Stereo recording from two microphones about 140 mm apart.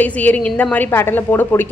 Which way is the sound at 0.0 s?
10° left (ahead or behind).